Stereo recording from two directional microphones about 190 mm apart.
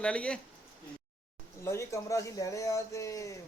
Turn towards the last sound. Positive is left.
turn(degrees=15)  # may be behind; listen again after turning